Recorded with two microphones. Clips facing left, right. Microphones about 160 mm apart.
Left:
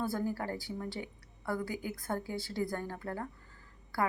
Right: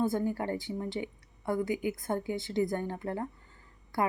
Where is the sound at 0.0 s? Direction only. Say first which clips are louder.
Right 5 dB; 20° right (ahead or behind).